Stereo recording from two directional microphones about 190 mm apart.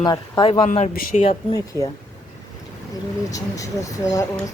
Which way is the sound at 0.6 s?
35° left (ahead or behind).